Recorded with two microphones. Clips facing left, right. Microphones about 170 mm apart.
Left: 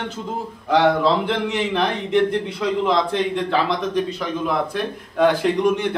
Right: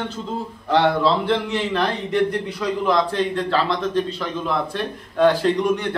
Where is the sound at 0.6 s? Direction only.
15° left (ahead or behind).